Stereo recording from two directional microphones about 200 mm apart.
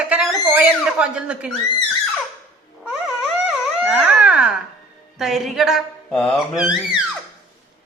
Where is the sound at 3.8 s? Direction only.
5° right (ahead or behind).